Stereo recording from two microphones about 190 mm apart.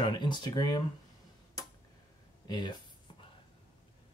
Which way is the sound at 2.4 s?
20° left (ahead or behind).